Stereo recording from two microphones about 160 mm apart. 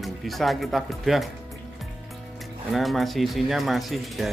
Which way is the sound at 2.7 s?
Centre (ahead or behind).